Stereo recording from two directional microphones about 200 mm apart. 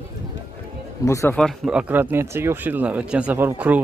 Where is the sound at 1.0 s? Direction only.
15° left (ahead or behind).